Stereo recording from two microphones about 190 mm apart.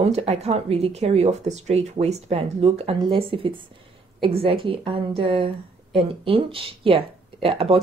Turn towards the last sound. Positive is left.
turn(degrees=-30)  # may be behind; listen again after turning